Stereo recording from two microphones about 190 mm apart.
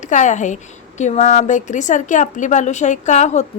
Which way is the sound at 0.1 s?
40° left (ahead or behind).